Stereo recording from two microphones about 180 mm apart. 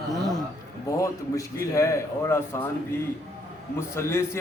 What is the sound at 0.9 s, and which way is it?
A man's voice, 20° left (ahead or behind).